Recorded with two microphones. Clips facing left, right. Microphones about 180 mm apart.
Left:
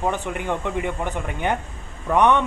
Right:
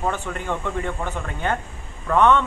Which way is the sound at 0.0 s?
15° left (ahead or behind).